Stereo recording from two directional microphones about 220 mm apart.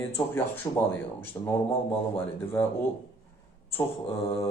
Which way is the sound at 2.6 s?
10° left (ahead or behind).